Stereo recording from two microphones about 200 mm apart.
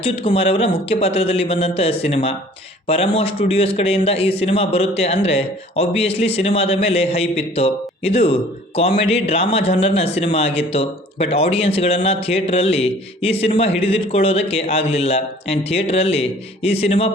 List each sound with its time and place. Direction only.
0.0 s a man's voice: 30° left (ahead or behind)